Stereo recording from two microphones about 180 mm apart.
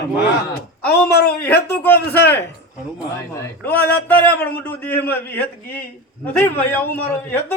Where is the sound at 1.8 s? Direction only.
10° left (ahead or behind).